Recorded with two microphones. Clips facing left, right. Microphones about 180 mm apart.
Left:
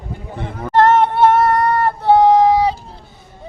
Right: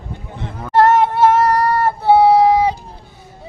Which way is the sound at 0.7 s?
5° right (ahead or behind).